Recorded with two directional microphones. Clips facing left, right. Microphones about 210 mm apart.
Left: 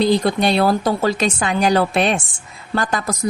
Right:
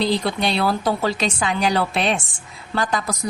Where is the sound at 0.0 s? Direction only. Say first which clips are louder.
Left 5 dB; 45° left (ahead or behind).